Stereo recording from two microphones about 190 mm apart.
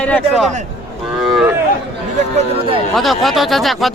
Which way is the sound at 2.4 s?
30° right (ahead or behind).